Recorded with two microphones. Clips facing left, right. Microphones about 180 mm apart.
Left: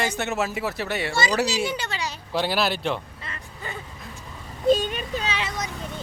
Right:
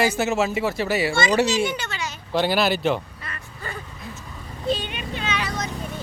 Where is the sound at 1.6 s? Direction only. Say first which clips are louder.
Right 1 dB; 30° left (ahead or behind).